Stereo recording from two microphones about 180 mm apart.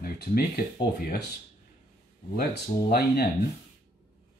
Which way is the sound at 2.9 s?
60° left (ahead or behind).